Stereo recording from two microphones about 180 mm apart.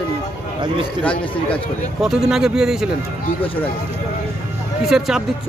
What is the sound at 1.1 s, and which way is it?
Speech, 30° left (ahead or behind).